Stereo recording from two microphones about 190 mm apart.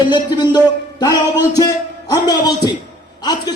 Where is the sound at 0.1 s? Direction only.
20° left (ahead or behind).